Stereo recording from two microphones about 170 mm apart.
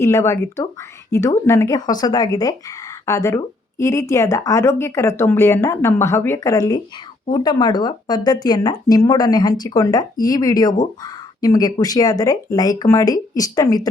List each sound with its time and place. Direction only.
0.0 s speech: 15° left (ahead or behind)